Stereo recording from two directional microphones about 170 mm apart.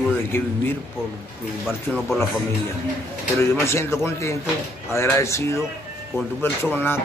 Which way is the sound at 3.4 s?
15° left (ahead or behind).